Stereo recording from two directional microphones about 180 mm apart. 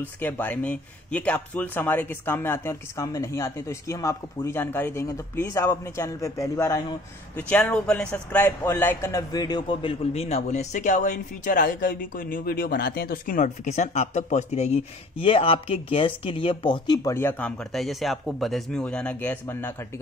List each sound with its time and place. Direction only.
0.0 s a man's voice: 10° left (ahead or behind)